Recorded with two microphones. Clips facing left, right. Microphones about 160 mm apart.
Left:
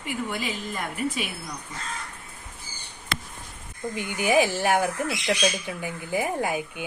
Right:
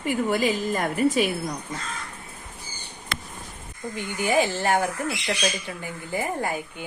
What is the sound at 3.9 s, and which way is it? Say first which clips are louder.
Speech: left 1 dB; 15° left (ahead or behind).